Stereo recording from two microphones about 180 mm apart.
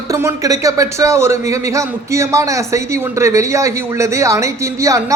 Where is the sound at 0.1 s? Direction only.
15° right (ahead or behind).